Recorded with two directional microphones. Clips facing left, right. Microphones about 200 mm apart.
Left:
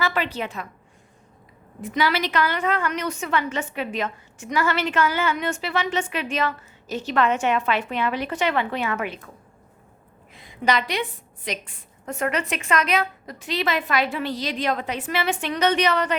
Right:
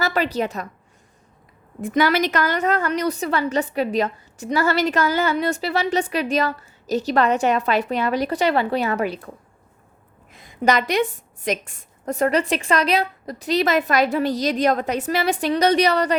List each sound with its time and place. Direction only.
0.0 s a woman's voice: 40° right (ahead or behind)
1.8 s a woman's voice: 50° right (ahead or behind)
10.3 s a woman's voice: 45° right (ahead or behind)